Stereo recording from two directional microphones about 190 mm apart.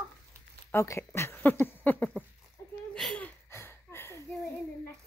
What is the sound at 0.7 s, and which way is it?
Speech, 15° left (ahead or behind).